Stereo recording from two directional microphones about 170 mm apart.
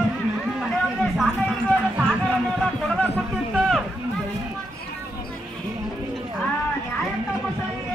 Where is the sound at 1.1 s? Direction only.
5° right (ahead or behind).